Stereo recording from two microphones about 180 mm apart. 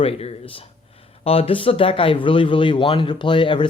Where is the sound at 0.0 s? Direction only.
35° left (ahead or behind).